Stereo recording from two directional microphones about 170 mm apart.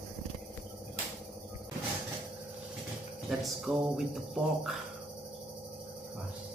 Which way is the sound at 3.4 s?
Centre (ahead or behind).